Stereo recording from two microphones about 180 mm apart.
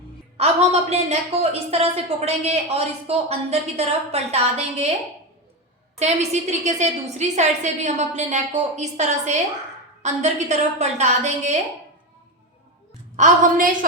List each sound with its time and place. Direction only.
0.3 s a woman's voice: 35° right (ahead or behind)
6.0 s speech: 40° right (ahead or behind)
13.1 s a woman's voice: 45° right (ahead or behind)